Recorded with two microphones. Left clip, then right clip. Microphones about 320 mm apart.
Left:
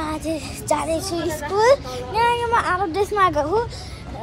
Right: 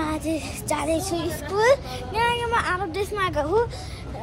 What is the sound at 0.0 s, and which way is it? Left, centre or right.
A woman's voice, centre.